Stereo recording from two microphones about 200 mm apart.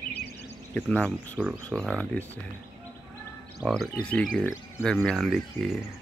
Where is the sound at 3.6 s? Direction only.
Centre (ahead or behind).